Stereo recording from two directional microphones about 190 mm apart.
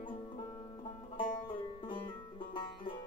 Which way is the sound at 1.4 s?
25° left (ahead or behind).